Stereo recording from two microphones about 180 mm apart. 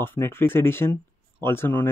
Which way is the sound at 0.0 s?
10° left (ahead or behind).